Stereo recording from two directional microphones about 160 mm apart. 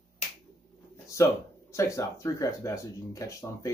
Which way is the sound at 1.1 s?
20° left (ahead or behind).